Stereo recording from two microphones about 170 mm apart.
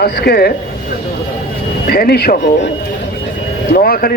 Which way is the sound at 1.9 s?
65° left (ahead or behind).